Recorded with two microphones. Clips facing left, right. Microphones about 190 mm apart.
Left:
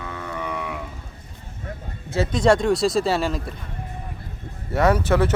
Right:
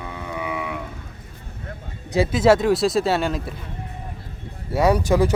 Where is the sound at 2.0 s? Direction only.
10° right (ahead or behind).